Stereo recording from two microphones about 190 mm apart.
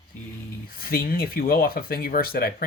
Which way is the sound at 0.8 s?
50° left (ahead or behind).